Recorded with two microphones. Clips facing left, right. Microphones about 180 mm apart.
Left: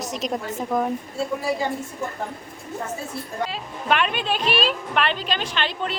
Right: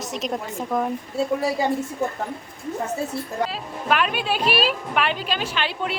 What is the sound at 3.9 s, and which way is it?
A woman's voice, 5° right (ahead or behind).